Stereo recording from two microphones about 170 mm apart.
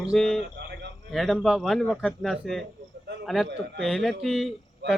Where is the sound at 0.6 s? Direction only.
90° right.